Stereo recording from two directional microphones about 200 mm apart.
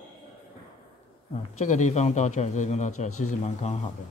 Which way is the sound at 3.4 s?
35° left (ahead or behind).